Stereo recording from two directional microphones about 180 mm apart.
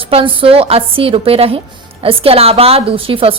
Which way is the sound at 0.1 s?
30° right (ahead or behind).